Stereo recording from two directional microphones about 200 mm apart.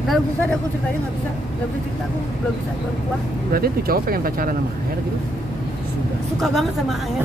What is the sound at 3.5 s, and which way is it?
Speech, 50° right (ahead or behind).